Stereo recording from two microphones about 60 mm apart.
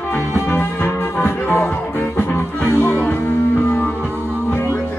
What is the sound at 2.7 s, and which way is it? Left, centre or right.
Music, left.